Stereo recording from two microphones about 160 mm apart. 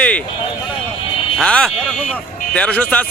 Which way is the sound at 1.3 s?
5° left (ahead or behind).